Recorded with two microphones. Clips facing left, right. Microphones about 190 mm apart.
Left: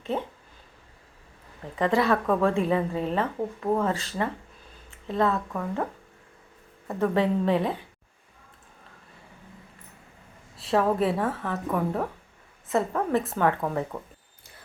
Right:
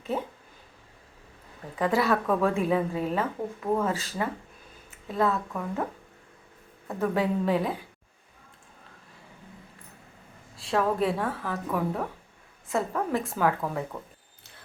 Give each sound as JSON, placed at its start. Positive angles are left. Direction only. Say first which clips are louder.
{"t": 0.0, "sound": "speech", "louder": "left 1 dB", "side_deg": -5}
{"t": 1.7, "sound": "speech", "louder": "left 2 dB", "side_deg": -5}
{"t": 6.8, "sound": "speech", "louder": "left 2 dB", "side_deg": -5}
{"t": 10.6, "sound": "speech", "louder": "left 2 dB", "side_deg": 0}
{"t": 13.9, "sound": "speech", "louder": "left 2 dB", "side_deg": 20}